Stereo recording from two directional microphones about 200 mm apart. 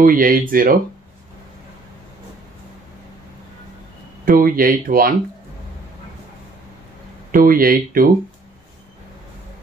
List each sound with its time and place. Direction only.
0.0 s speech: 45° right (ahead or behind)
4.3 s speech: 45° right (ahead or behind)
7.2 s speech: 45° right (ahead or behind)